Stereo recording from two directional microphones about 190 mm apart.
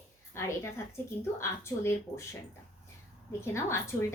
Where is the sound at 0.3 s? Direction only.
15° left (ahead or behind).